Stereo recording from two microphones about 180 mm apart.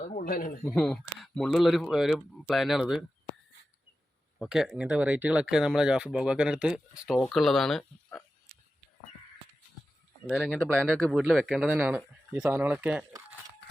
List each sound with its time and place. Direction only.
0.0 s a sound: 45° left (ahead or behind)
0.6 s speech: 5° left (ahead or behind)
4.4 s speech: 5° right (ahead or behind)
10.2 s speech: centre (ahead or behind)